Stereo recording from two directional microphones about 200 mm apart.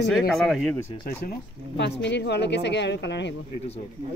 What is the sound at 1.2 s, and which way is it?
Speech, 60° left (ahead or behind).